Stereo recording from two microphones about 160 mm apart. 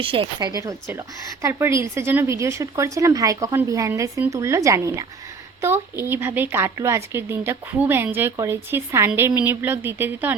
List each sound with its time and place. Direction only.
0.0 s a woman's voice: 35° right (ahead or behind); by 10.3 s 10° right (ahead or behind)